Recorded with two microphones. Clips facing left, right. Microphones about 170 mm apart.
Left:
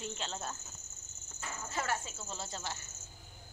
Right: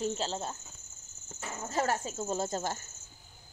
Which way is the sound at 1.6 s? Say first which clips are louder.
Right 7 dB; 40° right (ahead or behind).